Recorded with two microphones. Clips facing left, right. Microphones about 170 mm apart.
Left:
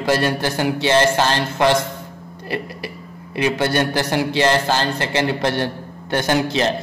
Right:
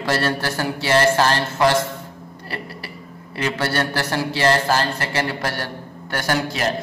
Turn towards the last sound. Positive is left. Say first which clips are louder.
# left 4 dB
turn(degrees=25)  # may be behind; listen again after turning